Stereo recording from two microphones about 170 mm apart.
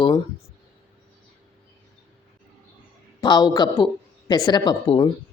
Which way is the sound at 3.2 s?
25° left (ahead or behind).